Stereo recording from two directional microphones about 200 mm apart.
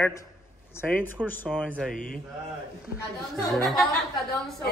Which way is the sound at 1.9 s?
45° left (ahead or behind).